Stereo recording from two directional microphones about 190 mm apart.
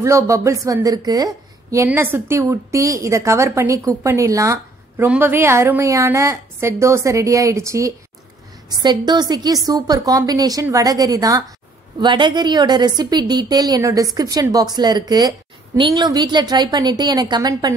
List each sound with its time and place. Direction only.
0.0 s a woman's voice: 15° right (ahead or behind)